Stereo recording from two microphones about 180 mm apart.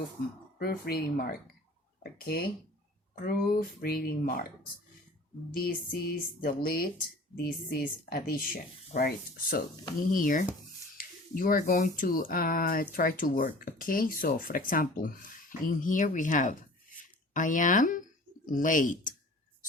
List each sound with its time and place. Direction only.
0.6 s speech: 60° left (ahead or behind)
5.6 s speech: 55° left (ahead or behind)